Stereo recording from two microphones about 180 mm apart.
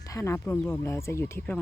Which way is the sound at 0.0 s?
15° left (ahead or behind).